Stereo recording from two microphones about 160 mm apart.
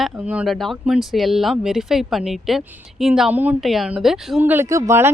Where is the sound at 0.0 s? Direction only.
10° right (ahead or behind).